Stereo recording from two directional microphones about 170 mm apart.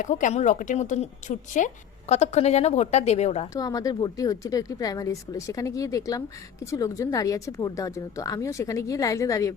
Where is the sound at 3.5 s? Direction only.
20° left (ahead or behind).